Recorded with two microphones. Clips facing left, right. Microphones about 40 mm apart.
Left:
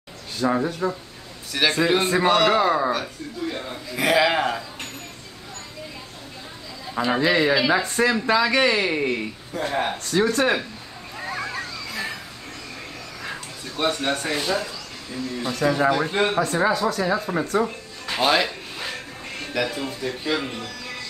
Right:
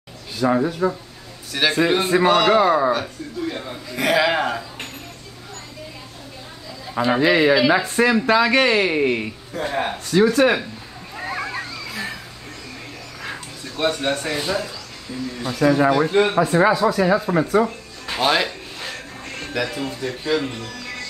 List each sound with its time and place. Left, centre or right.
0.4 s a man's voice: centre
6.9 s a sound: centre
7.2 s speech: centre
9.5 s a man's voice: centre
10.0 s speech: right
11.1 s a sound: centre
13.2 s speech: centre
18.0 s music: centre